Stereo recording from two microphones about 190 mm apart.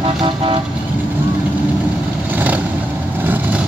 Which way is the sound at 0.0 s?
30° right (ahead or behind).